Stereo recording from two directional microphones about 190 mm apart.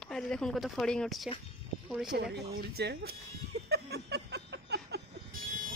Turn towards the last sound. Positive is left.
turn(degrees=-55)  # may be behind; listen again after turning